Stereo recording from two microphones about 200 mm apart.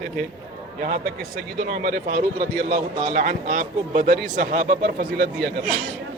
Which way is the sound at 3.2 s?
40° right (ahead or behind).